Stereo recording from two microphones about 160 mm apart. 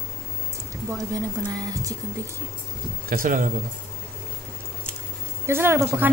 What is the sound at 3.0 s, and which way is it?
Speech, 60° right (ahead or behind).